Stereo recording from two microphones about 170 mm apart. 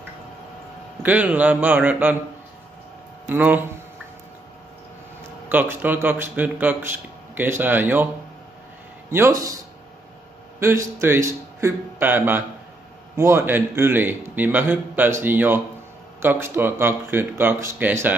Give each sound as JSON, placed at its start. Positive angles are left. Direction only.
{"t": 1.0, "sound": "a man's voice", "side_deg": -10}
{"t": 3.3, "sound": "a man's voice", "side_deg": -10}
{"t": 5.5, "sound": "a man's voice", "side_deg": -10}
{"t": 9.1, "sound": "speech", "side_deg": -15}
{"t": 10.6, "sound": "a man's voice", "side_deg": -15}